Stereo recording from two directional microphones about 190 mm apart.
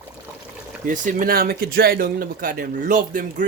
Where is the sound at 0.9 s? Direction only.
45° right (ahead or behind).